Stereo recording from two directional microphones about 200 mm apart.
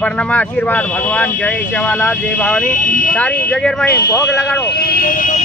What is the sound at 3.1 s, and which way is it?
Speech, 5° left (ahead or behind).